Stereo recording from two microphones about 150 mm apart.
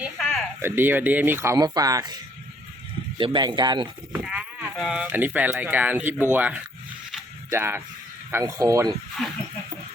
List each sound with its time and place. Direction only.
0.2 s a sound: centre (ahead or behind)
0.6 s speech: 15° right (ahead or behind)
3.2 s speech: 30° right (ahead or behind)
4.2 s sheep: 10° right (ahead or behind)
4.8 s speech: centre (ahead or behind); by 9.0 s 25° right (ahead or behind)
9.2 s speech: centre (ahead or behind)